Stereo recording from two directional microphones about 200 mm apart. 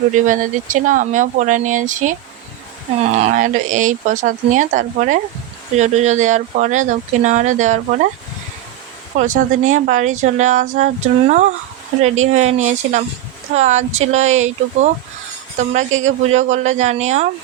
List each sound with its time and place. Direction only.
0.1 s speech: 40° right (ahead or behind)
3.2 s speech: 35° right (ahead or behind)
9.1 s speech: 40° right (ahead or behind)
12.6 s speech: 35° right (ahead or behind)